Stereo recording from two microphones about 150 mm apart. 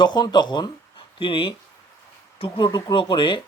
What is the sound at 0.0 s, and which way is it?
Speech, 30° left (ahead or behind).